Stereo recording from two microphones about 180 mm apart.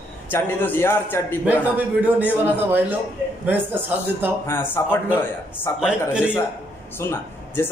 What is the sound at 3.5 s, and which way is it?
Speech, 10° right (ahead or behind).